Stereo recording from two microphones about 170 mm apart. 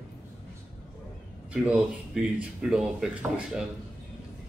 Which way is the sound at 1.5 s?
5° right (ahead or behind).